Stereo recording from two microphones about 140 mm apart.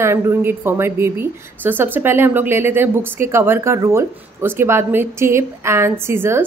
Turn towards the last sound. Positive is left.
turn(degrees=-15)  # may be behind; listen again after turning